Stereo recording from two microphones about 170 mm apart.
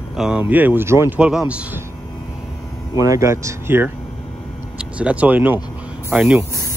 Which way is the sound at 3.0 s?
20° right (ahead or behind).